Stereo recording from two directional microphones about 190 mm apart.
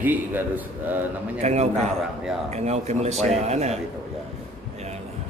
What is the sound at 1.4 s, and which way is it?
A man's voice, 35° right (ahead or behind).